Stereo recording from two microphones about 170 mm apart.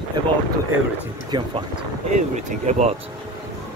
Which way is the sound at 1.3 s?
25° right (ahead or behind).